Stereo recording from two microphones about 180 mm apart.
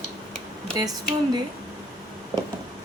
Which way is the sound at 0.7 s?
20° right (ahead or behind).